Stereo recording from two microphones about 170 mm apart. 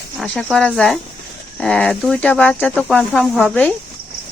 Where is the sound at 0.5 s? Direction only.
Centre (ahead or behind).